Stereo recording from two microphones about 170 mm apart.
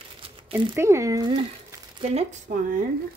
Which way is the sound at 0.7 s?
15° right (ahead or behind).